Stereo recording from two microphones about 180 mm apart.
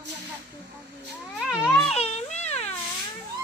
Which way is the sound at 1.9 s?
35° left (ahead or behind).